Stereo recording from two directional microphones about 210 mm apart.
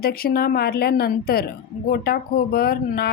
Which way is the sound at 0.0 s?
45° left (ahead or behind).